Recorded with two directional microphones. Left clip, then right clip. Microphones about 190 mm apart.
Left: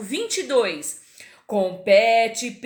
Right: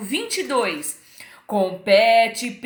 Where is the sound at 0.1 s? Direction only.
15° left (ahead or behind).